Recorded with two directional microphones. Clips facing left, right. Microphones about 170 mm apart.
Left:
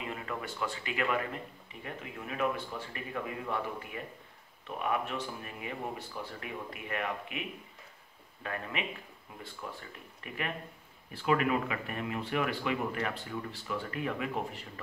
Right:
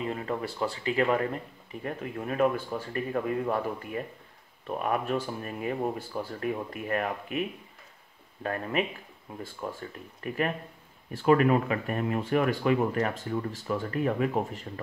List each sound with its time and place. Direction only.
0.0 s a man's voice: 35° right (ahead or behind)